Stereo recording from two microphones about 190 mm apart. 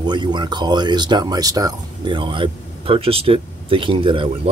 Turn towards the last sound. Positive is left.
turn(degrees=-25)  # may be behind; listen again after turning